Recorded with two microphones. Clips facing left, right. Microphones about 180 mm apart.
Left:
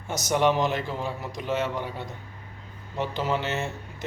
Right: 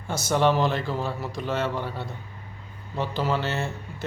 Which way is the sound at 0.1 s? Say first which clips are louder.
Right 1 dB; 15° left (ahead or behind).